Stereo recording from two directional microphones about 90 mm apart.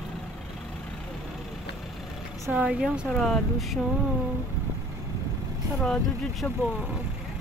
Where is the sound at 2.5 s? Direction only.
10° right (ahead or behind).